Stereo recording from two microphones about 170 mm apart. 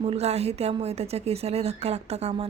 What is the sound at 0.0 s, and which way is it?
A woman's voice, 35° right (ahead or behind).